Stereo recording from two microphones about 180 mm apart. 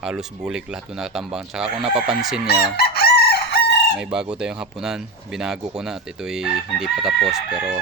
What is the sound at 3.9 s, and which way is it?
Speech, 5° right (ahead or behind).